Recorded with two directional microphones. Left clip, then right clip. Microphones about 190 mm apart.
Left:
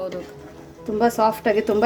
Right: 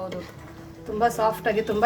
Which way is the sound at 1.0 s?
30° left (ahead or behind).